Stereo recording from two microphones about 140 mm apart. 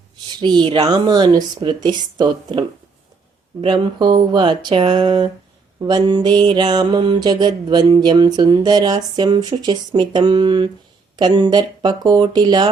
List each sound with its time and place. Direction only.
0.2 s speech: 30° right (ahead or behind)